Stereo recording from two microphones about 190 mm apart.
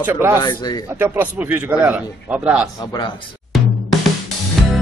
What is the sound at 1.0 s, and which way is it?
A man's voice, 10° right (ahead or behind).